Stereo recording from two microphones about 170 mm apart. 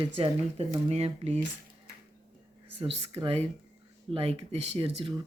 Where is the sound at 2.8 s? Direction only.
35° right (ahead or behind).